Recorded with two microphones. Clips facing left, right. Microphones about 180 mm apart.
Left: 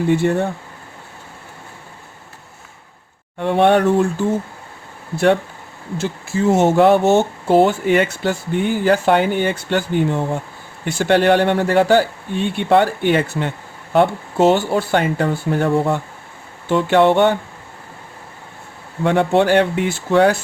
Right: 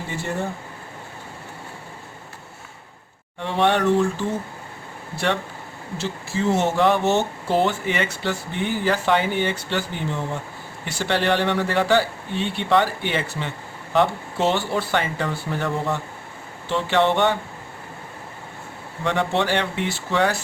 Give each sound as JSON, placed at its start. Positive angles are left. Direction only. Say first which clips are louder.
{"t": 0.1, "sound": "speech", "louder": "left 11 dB", "side_deg": 65}
{"t": 3.4, "sound": "speech", "louder": "left 6 dB", "side_deg": 55}
{"t": 19.0, "sound": "speech", "louder": "left 7 dB", "side_deg": 50}